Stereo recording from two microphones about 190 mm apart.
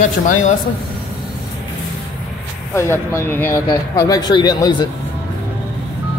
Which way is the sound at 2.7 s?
15° left (ahead or behind).